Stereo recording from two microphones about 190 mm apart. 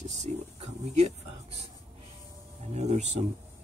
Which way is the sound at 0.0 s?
35° right (ahead or behind).